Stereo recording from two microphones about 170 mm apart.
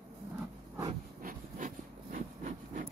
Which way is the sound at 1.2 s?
50° right (ahead or behind).